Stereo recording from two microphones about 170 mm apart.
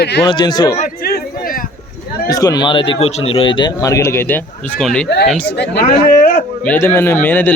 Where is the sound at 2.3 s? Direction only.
20° left (ahead or behind).